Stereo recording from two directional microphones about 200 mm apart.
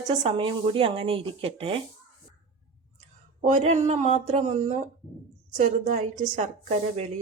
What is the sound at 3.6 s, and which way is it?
A woman's voice, 35° right (ahead or behind).